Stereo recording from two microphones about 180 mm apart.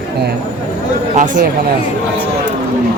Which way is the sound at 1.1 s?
45° right (ahead or behind).